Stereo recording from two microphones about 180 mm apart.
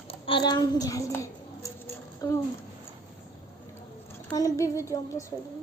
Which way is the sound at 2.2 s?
20° left (ahead or behind).